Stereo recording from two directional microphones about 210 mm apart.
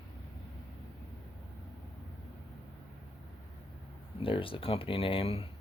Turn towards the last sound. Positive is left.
turn(degrees=25)  # may be behind; listen again after turning